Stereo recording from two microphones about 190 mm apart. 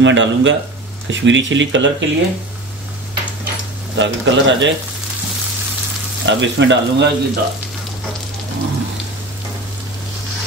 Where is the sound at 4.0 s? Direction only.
75° right (ahead or behind).